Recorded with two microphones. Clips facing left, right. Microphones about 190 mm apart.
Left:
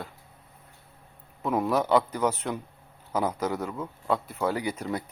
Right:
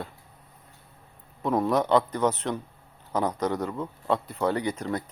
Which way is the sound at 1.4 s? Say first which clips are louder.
Right 2 dB; 5° left (ahead or behind).